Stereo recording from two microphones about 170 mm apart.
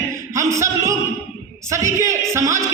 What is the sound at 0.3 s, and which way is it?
Speech, 15° right (ahead or behind).